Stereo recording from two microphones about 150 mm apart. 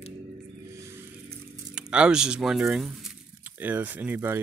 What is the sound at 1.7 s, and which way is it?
Speech, 5° right (ahead or behind).